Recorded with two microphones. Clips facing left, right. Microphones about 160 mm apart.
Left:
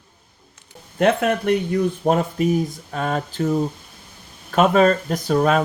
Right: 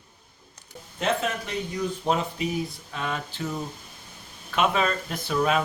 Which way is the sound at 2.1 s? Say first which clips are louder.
Left 7 dB; 50° left (ahead or behind).